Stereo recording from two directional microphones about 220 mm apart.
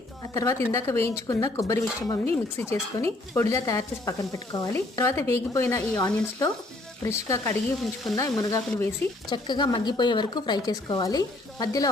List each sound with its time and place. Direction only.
0.3 s speech: 15° left (ahead or behind)
7.0 s speech: 10° left (ahead or behind)